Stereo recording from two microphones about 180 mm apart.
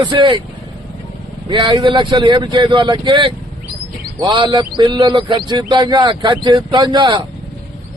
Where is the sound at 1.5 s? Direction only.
25° right (ahead or behind).